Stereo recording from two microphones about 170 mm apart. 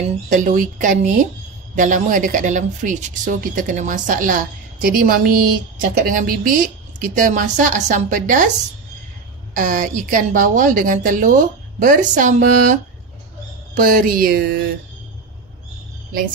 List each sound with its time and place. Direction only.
0.0 s speech: 50° right (ahead or behind)
9.6 s speech: 50° right (ahead or behind)
13.7 s speech: 55° right (ahead or behind)